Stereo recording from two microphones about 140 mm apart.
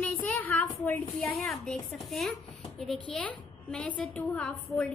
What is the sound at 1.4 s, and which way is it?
A woman's voice, centre (ahead or behind).